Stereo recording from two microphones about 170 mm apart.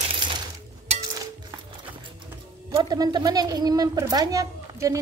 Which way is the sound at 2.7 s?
25° right (ahead or behind).